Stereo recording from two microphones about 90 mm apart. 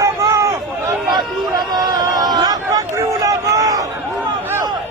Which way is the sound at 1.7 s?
50° right (ahead or behind).